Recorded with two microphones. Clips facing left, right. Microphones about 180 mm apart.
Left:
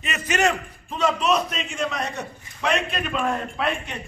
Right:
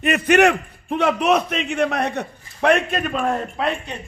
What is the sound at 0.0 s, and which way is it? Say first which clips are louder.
A man's voice: right 8 dB; 60° right (ahead or behind).